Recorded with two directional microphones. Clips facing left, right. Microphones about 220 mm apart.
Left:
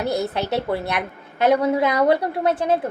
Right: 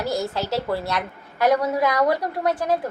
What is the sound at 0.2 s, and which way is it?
A woman's voice, 20° left (ahead or behind).